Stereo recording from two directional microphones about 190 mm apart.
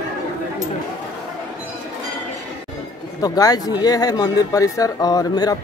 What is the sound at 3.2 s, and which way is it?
Speech, 20° left (ahead or behind).